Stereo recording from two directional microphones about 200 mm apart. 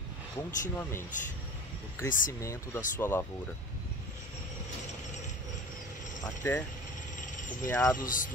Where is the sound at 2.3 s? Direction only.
15° left (ahead or behind).